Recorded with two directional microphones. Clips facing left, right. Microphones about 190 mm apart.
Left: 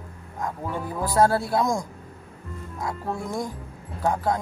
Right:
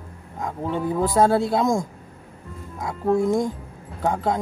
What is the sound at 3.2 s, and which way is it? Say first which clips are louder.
Speech: right 8 dB; 20° right (ahead or behind).